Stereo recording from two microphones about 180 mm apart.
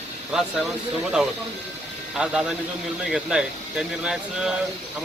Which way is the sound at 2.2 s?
5° right (ahead or behind).